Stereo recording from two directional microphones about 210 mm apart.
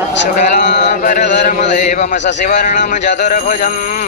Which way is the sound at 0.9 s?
35° left (ahead or behind).